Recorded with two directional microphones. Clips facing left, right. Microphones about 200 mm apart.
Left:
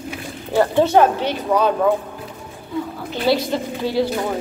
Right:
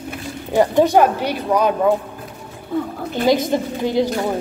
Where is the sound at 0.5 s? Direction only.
15° right (ahead or behind).